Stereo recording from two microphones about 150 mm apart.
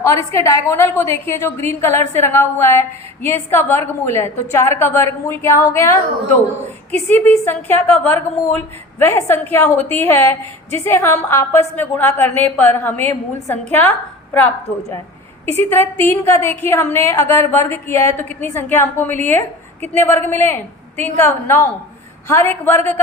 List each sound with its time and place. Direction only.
0.0 s a woman's voice: 20° left (ahead or behind)
7.1 s a woman's voice: 15° left (ahead or behind)